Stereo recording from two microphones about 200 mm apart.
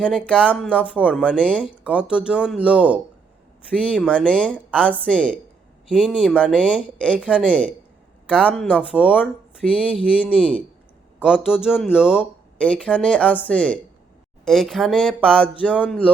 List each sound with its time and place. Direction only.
0.0 s speech: 5° left (ahead or behind)
5.1 s a woman's voice: 5° right (ahead or behind)
8.3 s speech: 5° left (ahead or behind)
8.7 s a woman's voice: 5° right (ahead or behind)